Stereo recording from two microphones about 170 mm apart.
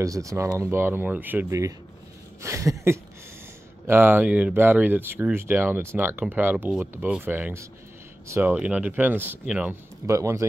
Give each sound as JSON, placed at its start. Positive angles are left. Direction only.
{"t": 0.0, "sound": "speech", "side_deg": -20}